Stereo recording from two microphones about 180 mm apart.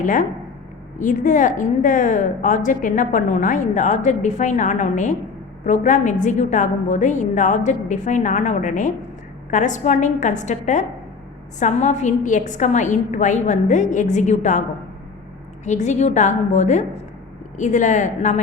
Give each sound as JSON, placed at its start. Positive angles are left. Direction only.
{"t": 0.0, "sound": "a woman's voice", "side_deg": 45}
{"t": 15.6, "sound": "a woman's voice", "side_deg": 40}